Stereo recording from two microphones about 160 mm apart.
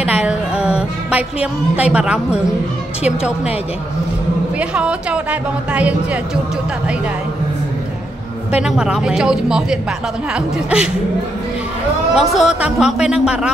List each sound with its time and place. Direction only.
0.0 s music: 5° right (ahead or behind)
4.6 s a woman's voice: 5° right (ahead or behind)
8.5 s speech: 5° right (ahead or behind)
12.2 s speech: 5° right (ahead or behind)